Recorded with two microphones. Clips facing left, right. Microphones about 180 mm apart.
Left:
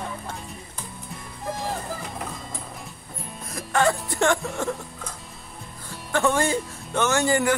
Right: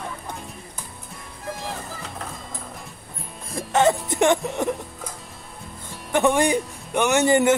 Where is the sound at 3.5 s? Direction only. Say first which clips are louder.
Right 3 dB; 20° right (ahead or behind).